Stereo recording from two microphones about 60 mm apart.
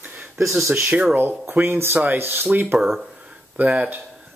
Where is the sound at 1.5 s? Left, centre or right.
Right.